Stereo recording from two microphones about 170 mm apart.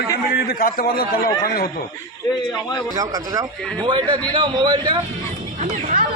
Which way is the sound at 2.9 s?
20° right (ahead or behind).